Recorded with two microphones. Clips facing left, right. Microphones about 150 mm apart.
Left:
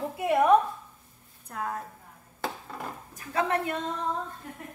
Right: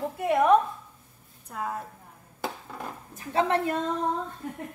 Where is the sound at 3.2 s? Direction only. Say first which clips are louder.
Right 3 dB; 30° right (ahead or behind).